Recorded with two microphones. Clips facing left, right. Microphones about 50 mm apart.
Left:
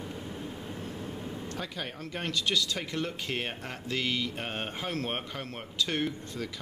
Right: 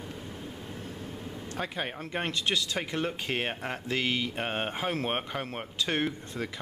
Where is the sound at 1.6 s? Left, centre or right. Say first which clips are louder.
Right 8 dB; right.